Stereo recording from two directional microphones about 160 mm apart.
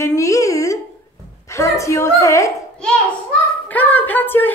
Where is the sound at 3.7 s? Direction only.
10° left (ahead or behind).